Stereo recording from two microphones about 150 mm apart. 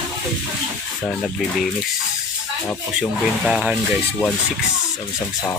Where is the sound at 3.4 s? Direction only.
Centre (ahead or behind).